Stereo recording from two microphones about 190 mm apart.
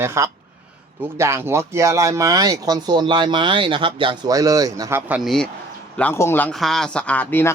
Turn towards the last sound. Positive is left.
turn(degrees=10)  # may be behind; listen again after turning